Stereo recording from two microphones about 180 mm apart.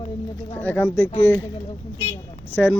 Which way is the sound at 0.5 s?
10° left (ahead or behind).